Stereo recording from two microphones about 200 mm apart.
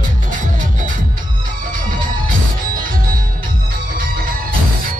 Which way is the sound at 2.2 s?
45° right (ahead or behind).